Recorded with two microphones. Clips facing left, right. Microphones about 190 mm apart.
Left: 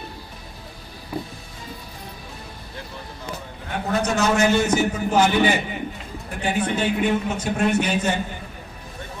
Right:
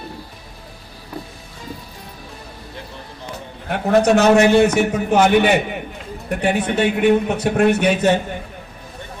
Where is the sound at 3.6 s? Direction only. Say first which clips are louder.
Right 9 dB; 70° right (ahead or behind).